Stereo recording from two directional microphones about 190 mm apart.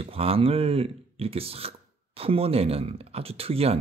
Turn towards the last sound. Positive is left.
turn(degrees=-30)  # may be behind; listen again after turning